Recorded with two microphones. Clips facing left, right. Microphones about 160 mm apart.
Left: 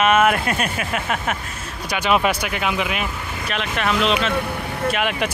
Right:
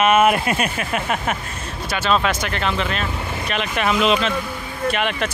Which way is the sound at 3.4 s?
Centre (ahead or behind).